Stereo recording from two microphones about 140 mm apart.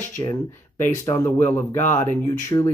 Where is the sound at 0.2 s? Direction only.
20° left (ahead or behind).